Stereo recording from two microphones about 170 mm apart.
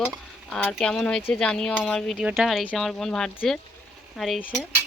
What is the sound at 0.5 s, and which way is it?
Speech, 5° left (ahead or behind).